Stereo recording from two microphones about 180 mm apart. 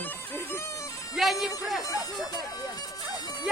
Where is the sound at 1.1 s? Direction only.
Centre (ahead or behind).